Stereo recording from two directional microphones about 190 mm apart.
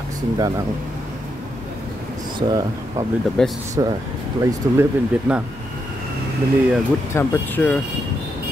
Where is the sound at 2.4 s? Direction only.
20° right (ahead or behind).